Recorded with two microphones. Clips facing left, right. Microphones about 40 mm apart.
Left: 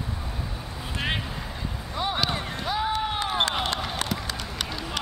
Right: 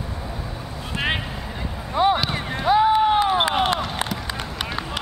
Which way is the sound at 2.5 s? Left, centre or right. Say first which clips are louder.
Right 10 dB; centre.